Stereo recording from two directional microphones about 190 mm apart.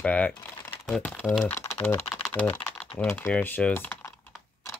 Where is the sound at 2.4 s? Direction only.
10° left (ahead or behind).